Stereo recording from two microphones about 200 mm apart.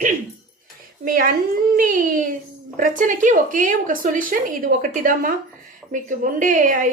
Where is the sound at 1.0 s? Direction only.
45° right (ahead or behind).